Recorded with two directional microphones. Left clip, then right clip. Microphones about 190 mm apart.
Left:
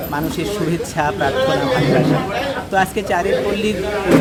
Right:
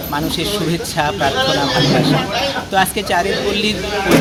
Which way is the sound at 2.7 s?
5° left (ahead or behind).